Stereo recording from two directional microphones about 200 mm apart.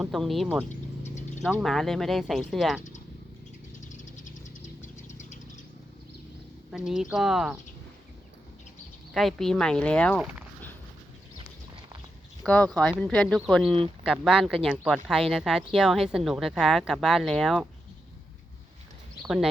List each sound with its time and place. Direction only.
0.0 s speech: centre (ahead or behind)
4.8 s a sound: 35° left (ahead or behind)
6.7 s speech: 5° right (ahead or behind)
9.1 s speech: centre (ahead or behind)
12.4 s speech: 5° left (ahead or behind)